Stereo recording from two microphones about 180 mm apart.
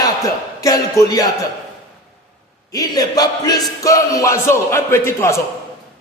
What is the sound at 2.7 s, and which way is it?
Speech, 20° left (ahead or behind).